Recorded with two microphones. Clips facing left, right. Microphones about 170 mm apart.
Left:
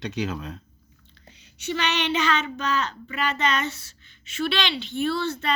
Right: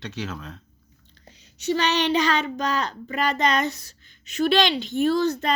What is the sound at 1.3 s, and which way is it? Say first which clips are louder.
Speech: right 5 dB; 40° right (ahead or behind).